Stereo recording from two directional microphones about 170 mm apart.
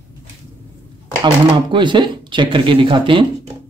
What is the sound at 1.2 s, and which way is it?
Speech, 30° right (ahead or behind).